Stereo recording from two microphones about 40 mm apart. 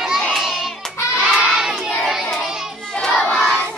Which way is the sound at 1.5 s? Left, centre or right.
Centre.